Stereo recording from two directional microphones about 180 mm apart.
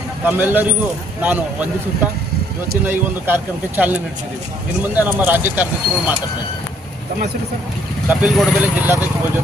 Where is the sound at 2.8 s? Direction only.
10° right (ahead or behind).